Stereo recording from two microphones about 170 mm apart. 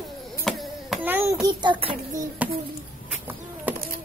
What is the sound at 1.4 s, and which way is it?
Child singing, 25° right (ahead or behind).